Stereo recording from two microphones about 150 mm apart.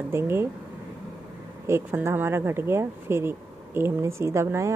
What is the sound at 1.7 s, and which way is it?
Speech, 15° right (ahead or behind).